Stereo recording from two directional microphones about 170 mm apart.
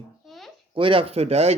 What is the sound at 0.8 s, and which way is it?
Speech, 30° right (ahead or behind).